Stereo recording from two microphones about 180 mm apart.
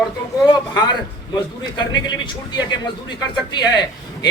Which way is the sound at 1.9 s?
25° left (ahead or behind).